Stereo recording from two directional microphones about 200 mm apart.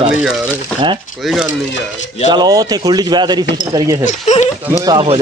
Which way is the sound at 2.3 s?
20° right (ahead or behind).